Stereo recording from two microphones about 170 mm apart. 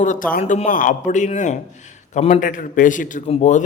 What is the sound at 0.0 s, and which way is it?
Speech, 50° left (ahead or behind).